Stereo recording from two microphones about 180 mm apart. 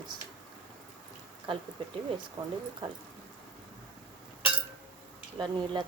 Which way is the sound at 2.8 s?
25° right (ahead or behind).